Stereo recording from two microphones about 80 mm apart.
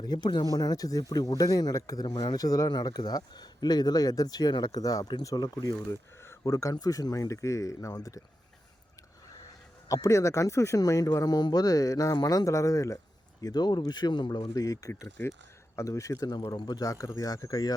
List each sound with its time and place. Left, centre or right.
0.0 s speech: left
0.5 s speech: left
9.9 s speech: left
13.4 s speech: left
16.6 s speech: left